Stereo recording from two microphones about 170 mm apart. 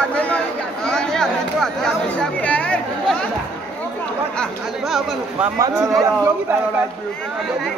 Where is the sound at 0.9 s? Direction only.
5° left (ahead or behind).